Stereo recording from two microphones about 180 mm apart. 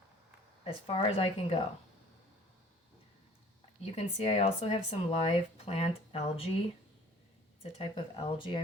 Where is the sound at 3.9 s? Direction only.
35° left (ahead or behind).